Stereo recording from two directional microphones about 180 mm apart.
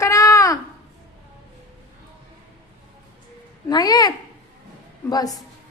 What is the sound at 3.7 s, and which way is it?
Speech, 25° left (ahead or behind).